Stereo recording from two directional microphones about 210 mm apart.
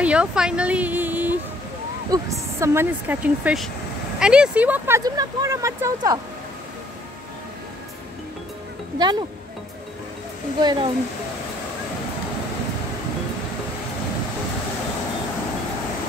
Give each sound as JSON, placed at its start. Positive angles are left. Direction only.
{"t": 0.0, "sound": "speech", "side_deg": -5}
{"t": 8.9, "sound": "speech", "side_deg": -20}
{"t": 10.6, "sound": "speech", "side_deg": -20}